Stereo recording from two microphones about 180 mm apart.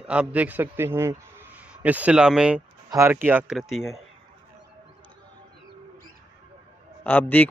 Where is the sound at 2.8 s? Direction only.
15° right (ahead or behind).